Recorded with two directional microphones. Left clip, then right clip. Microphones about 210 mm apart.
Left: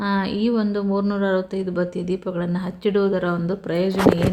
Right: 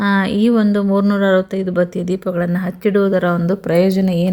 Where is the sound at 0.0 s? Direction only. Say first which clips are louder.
Right 6 dB; 15° right (ahead or behind).